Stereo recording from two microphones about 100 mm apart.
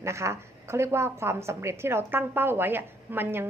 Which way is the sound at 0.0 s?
30° right (ahead or behind).